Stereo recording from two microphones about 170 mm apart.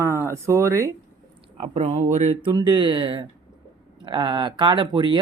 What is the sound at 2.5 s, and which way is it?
Speech, 25° right (ahead or behind).